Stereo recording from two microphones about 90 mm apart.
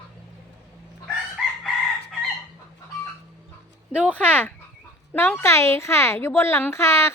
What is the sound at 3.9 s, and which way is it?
Speech, 15° left (ahead or behind).